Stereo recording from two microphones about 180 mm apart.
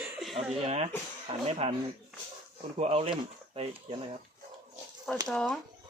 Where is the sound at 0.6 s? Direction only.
35° right (ahead or behind).